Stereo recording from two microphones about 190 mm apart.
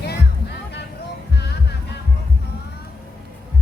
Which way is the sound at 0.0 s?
60° left (ahead or behind).